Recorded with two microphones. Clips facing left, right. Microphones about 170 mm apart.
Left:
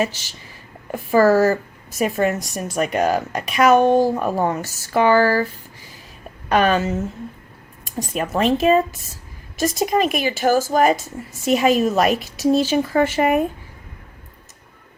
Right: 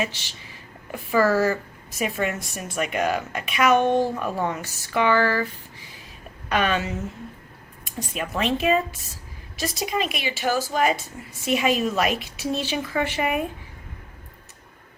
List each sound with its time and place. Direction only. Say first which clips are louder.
0.0 s a woman's voice: left 6 dB; 40° left (ahead or behind)
6.5 s a woman's voice: left 6 dB; 40° left (ahead or behind)